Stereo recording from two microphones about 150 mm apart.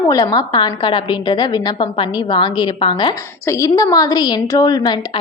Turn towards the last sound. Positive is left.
turn(degrees=30)  # may be behind; listen again after turning